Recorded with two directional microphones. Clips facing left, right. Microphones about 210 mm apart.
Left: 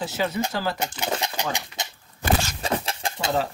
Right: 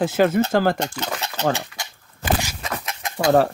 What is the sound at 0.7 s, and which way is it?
Speech, 10° left (ahead or behind).